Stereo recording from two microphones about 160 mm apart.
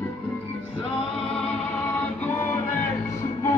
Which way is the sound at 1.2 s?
5° left (ahead or behind).